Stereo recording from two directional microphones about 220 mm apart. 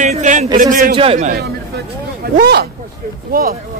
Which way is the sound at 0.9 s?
25° right (ahead or behind).